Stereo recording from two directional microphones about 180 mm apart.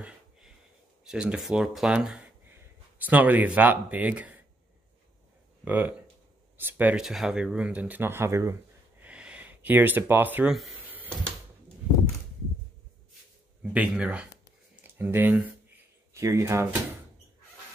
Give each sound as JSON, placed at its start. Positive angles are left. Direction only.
{"t": 1.0, "sound": "speech", "side_deg": -5}
{"t": 5.7, "sound": "speech", "side_deg": -10}
{"t": 9.0, "sound": "a sound", "side_deg": -5}
{"t": 13.6, "sound": "speech", "side_deg": -5}
{"t": 14.8, "sound": "a sound", "side_deg": -10}
{"t": 16.1, "sound": "speech", "side_deg": -15}